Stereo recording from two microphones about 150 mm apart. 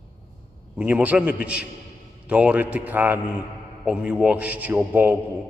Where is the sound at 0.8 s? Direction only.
10° right (ahead or behind).